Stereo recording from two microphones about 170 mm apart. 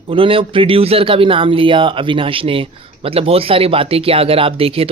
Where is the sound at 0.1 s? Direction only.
30° right (ahead or behind).